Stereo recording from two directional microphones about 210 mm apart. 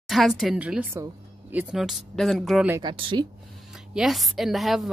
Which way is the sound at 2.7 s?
20° right (ahead or behind).